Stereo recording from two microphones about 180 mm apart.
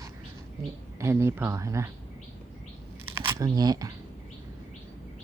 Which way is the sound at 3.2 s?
25° right (ahead or behind).